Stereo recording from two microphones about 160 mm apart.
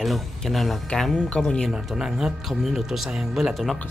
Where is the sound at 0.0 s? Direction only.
Centre (ahead or behind).